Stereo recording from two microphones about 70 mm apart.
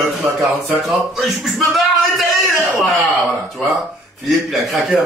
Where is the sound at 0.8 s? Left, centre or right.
Centre.